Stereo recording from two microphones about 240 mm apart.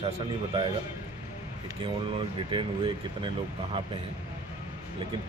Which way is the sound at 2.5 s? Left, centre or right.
Centre.